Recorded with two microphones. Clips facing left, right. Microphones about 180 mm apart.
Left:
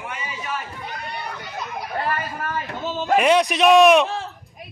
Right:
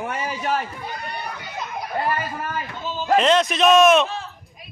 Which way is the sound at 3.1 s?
10° left (ahead or behind).